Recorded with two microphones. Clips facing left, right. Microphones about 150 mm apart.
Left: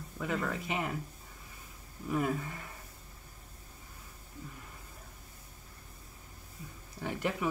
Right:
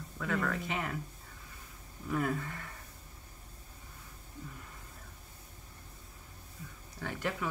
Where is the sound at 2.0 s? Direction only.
10° left (ahead or behind).